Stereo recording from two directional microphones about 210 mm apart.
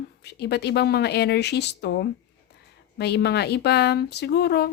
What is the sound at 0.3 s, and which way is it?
A woman's voice, 55° left (ahead or behind).